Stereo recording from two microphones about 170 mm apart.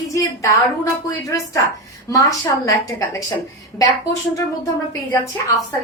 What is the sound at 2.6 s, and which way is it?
Speech, 20° left (ahead or behind).